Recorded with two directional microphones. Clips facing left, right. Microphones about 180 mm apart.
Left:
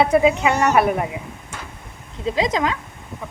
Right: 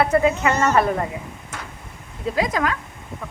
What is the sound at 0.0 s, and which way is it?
A woman's voice, 15° left (ahead or behind).